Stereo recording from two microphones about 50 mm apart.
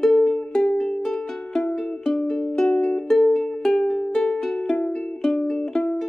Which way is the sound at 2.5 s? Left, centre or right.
Centre.